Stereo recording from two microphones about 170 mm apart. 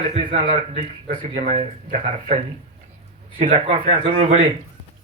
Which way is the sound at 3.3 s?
35° right (ahead or behind).